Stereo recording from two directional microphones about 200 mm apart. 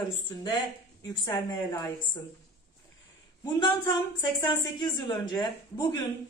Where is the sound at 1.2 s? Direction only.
20° left (ahead or behind).